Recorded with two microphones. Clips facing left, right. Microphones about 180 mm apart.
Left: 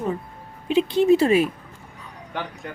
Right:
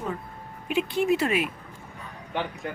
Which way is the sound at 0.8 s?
30° left (ahead or behind).